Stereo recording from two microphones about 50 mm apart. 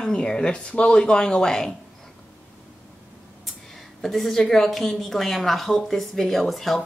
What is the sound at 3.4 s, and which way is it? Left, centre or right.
A woman's voice, centre.